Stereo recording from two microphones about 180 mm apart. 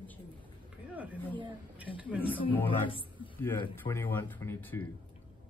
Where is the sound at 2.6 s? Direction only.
30° left (ahead or behind).